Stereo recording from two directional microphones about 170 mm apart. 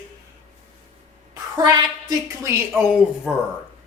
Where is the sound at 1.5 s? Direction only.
25° right (ahead or behind).